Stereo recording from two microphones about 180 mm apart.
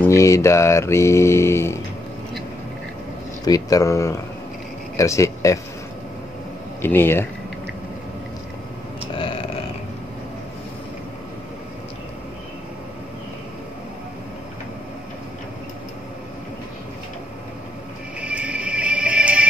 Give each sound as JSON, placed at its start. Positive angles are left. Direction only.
{"t": 0.0, "sound": "music", "side_deg": 15}
{"t": 3.4, "sound": "music", "side_deg": 20}
{"t": 4.9, "sound": "speech", "side_deg": 15}
{"t": 6.8, "sound": "music", "side_deg": 10}
{"t": 9.1, "sound": "a sound", "side_deg": 30}
{"t": 18.2, "sound": "music", "side_deg": -5}